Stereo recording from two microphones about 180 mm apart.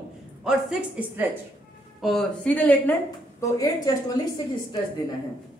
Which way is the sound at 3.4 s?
20° left (ahead or behind).